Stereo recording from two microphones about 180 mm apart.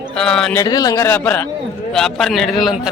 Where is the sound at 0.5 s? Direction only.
20° left (ahead or behind).